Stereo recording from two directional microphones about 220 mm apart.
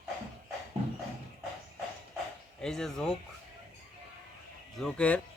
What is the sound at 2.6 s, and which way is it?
Speech, centre (ahead or behind).